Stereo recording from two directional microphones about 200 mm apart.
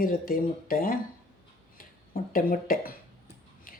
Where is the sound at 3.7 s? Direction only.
45° left (ahead or behind).